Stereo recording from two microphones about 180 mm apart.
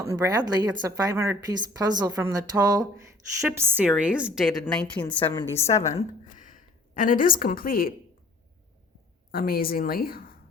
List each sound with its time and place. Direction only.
0.0 s a woman's voice: 15° right (ahead or behind)
4.6 s a woman's voice: 5° left (ahead or behind)
6.0 s speech: 45° left (ahead or behind)
9.3 s a woman's voice: 55° left (ahead or behind)